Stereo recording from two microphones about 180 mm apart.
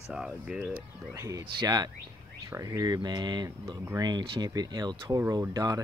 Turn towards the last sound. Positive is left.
turn(degrees=-20)  # may be behind; listen again after turning